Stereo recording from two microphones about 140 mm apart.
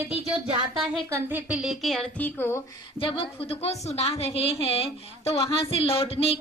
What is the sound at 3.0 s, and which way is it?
A woman's voice, 40° left (ahead or behind).